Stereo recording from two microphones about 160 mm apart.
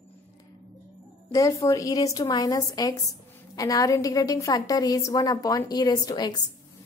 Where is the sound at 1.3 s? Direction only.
20° left (ahead or behind).